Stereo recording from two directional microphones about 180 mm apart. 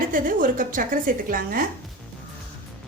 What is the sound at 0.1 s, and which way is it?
A woman's voice, 50° right (ahead or behind).